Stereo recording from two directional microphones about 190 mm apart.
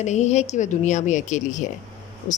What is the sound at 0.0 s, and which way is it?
A woman's voice, 35° left (ahead or behind).